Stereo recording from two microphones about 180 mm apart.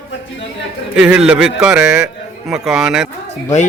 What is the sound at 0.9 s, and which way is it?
A man's voice, 5° right (ahead or behind).